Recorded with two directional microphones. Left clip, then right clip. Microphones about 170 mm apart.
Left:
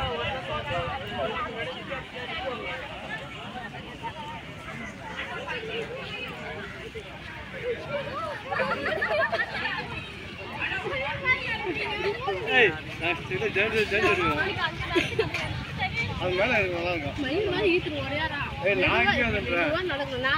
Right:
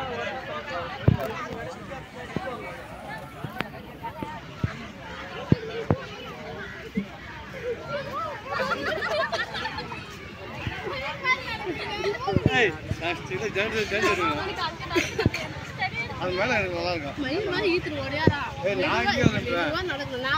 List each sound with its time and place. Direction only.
8.5 s a sound: 25° right (ahead or behind)
11.3 s children playing: 30° right (ahead or behind)
12.3 s speech: 35° right (ahead or behind)